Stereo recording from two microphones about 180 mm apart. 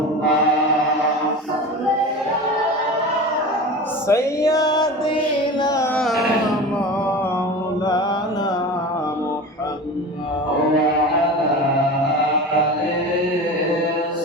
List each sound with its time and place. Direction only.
4.1 s music: 15° left (ahead or behind)
5.6 s carnatic music: 20° left (ahead or behind)
6.0 s music: centre (ahead or behind)